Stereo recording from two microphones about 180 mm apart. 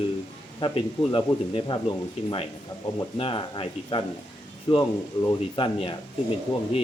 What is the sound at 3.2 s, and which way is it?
A man's voice, 30° left (ahead or behind).